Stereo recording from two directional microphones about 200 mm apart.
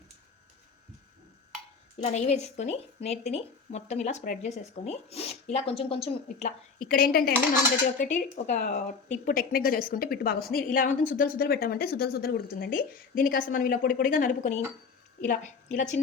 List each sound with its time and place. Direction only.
2.0 s a woman's voice: 35° left (ahead or behind)
6.7 s speech: 45° left (ahead or behind)
7.9 s a woman's voice: 35° left (ahead or behind)